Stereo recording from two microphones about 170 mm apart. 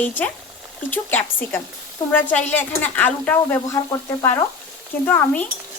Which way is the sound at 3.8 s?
20° left (ahead or behind).